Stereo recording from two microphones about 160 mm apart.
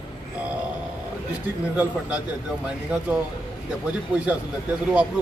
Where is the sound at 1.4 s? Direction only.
10° right (ahead or behind).